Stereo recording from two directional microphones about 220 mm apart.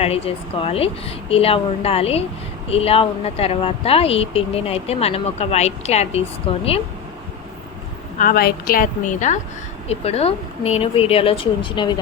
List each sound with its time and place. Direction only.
0.0 s a woman's voice: 25° left (ahead or behind)
8.2 s a woman's voice: 45° left (ahead or behind); by 11.9 s 20° left (ahead or behind)